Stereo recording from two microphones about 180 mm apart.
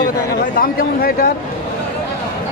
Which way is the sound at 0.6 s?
60° left (ahead or behind).